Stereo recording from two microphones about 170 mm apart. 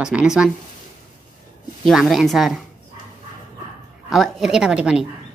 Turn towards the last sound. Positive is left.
turn(degrees=-5)  # may be behind; listen again after turning